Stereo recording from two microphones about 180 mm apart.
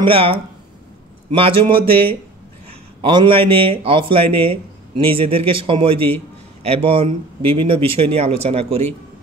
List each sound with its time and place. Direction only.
0.0 s a man's voice: 30° right (ahead or behind)
3.0 s a man's voice: 25° right (ahead or behind)